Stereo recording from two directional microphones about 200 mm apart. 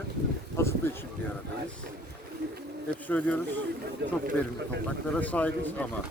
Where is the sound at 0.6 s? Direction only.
15° left (ahead or behind).